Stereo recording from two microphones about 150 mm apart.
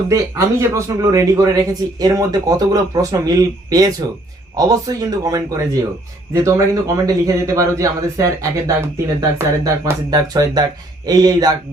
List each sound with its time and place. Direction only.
0.1 s a man's voice: 20° right (ahead or behind)